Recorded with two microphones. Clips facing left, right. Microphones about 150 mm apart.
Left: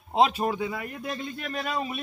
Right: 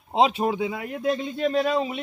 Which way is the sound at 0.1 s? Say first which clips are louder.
Right 2 dB; 20° right (ahead or behind).